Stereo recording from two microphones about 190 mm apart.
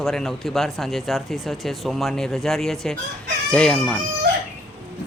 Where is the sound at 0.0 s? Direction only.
Centre (ahead or behind).